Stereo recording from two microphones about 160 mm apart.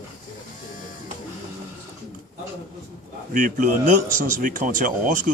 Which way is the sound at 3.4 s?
60° right (ahead or behind).